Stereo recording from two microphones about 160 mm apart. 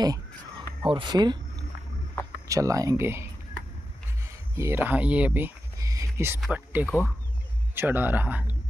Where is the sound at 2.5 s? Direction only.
20° right (ahead or behind).